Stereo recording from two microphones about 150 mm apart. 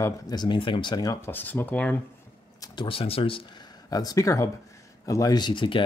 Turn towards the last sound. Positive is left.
turn(degrees=35)  # may be behind; listen again after turning